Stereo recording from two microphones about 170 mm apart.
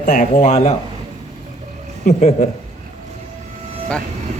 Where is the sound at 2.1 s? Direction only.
40° left (ahead or behind).